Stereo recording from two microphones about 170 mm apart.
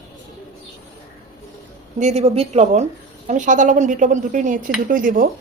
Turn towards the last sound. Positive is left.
turn(degrees=-55)  # may be behind; listen again after turning